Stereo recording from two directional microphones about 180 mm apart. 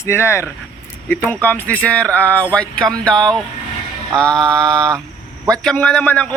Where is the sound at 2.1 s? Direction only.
10° left (ahead or behind).